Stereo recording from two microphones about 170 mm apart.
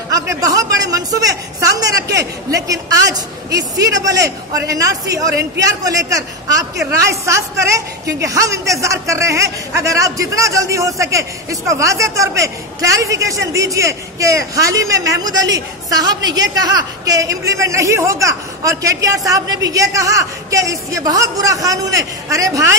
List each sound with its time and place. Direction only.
0.1 s a man's voice: 20° right (ahead or behind)